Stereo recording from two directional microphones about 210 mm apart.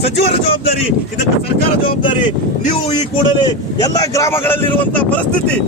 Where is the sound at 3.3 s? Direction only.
20° left (ahead or behind).